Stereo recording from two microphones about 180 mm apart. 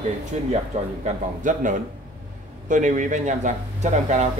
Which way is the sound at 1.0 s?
45° right (ahead or behind).